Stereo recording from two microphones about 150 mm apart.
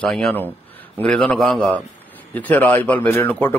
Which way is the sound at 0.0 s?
5° left (ahead or behind).